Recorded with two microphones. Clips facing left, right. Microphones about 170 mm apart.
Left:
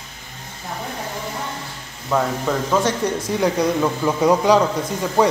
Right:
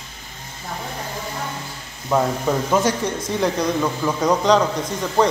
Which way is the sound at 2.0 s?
10° right (ahead or behind).